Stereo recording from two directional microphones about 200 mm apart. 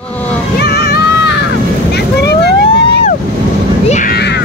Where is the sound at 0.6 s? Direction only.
55° left (ahead or behind).